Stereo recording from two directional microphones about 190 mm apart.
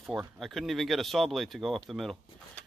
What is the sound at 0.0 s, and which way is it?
Speech, centre (ahead or behind).